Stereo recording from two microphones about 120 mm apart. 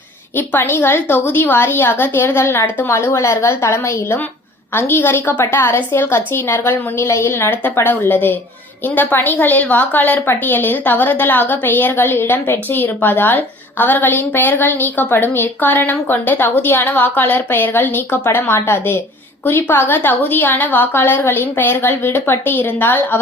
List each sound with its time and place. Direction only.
0.3 s a woman's voice: 15° left (ahead or behind)